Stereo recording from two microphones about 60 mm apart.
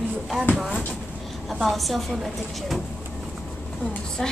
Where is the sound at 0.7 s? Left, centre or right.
Left.